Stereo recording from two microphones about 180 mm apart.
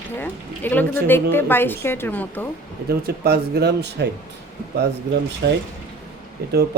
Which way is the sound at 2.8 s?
60° right (ahead or behind).